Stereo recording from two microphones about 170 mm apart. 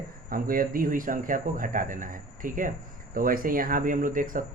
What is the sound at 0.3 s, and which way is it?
Speech, 55° right (ahead or behind).